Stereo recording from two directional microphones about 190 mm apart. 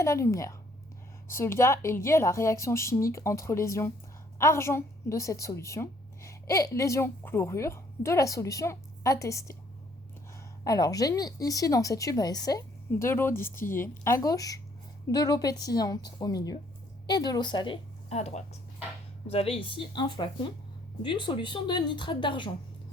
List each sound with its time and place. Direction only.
0.0 s a woman's voice: 15° left (ahead or behind)
10.6 s a woman's voice: 20° left (ahead or behind)
18.1 s a woman's voice: 35° left (ahead or behind)